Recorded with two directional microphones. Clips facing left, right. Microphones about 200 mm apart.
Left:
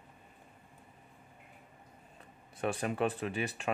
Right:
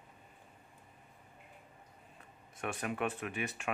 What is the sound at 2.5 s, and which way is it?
Speech, 30° left (ahead or behind).